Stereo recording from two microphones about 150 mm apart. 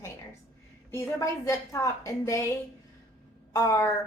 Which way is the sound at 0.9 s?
20° left (ahead or behind).